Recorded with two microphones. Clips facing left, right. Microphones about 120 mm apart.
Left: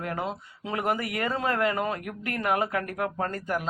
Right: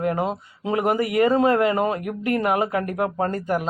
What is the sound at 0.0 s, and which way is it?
Speech, 20° right (ahead or behind).